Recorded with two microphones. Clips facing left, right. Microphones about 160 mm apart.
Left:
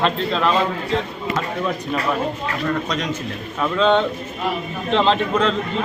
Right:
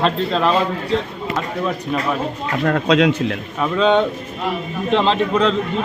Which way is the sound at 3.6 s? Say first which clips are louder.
Right 1 dB; 5° right (ahead or behind).